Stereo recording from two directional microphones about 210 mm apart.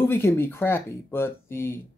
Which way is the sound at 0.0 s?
10° left (ahead or behind).